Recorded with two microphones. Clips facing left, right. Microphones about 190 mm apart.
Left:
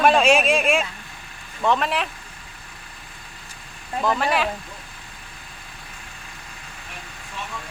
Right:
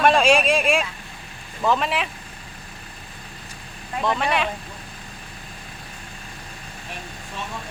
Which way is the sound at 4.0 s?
Centre (ahead or behind).